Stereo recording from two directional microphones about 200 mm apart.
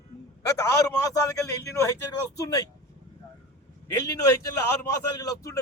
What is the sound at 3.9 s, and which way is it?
A man's voice, 15° left (ahead or behind).